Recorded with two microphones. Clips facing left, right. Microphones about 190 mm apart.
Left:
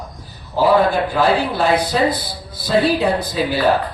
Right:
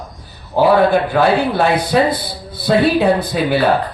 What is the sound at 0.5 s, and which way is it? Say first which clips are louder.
A man's voice: right 3 dB; 60° right (ahead or behind).